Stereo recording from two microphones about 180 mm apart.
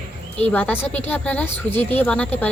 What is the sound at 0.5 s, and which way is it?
A woman's voice, 10° left (ahead or behind).